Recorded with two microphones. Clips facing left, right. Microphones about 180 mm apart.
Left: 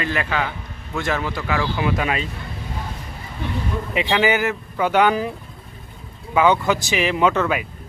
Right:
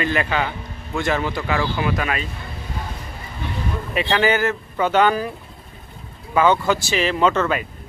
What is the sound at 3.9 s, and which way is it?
Speech, 15° left (ahead or behind).